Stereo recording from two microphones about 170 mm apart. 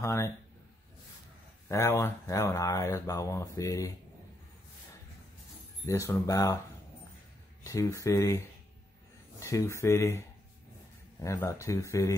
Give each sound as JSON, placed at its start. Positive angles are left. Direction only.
{"t": 0.0, "sound": "speech", "side_deg": 15}
{"t": 1.7, "sound": "speech", "side_deg": 15}
{"t": 5.9, "sound": "speech", "side_deg": 15}
{"t": 7.6, "sound": "speech", "side_deg": 20}